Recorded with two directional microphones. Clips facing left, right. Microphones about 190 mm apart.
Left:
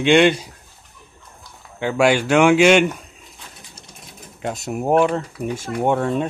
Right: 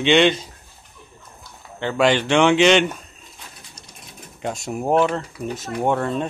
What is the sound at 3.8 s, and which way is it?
Sewing machine, 25° left (ahead or behind).